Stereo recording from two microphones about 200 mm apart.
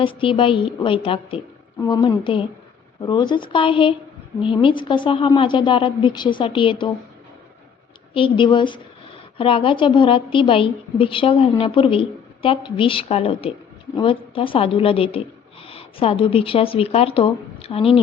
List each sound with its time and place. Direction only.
0.0 s a woman's voice: 25° left (ahead or behind)
8.1 s a woman's voice: 25° left (ahead or behind)